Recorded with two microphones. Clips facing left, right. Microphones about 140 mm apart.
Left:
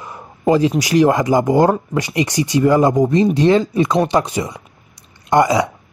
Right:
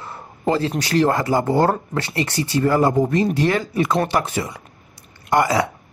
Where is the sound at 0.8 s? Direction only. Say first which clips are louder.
Left 4 dB; 15° left (ahead or behind).